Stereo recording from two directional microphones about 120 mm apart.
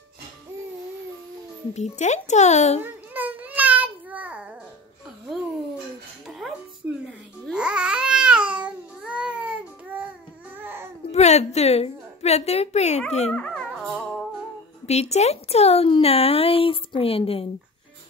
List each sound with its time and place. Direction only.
1.7 s a child's voice: 70° left (ahead or behind)
2.8 s a sound: 15° right (ahead or behind)
6.2 s music: centre (ahead or behind)
7.5 s babbling: 10° right (ahead or behind)
10.6 s baby cry: 20° right (ahead or behind)
11.1 s a woman's voice: 65° left (ahead or behind)
13.3 s dog: 10° left (ahead or behind)
13.8 s music: 5° left (ahead or behind)
14.9 s speech: 65° left (ahead or behind)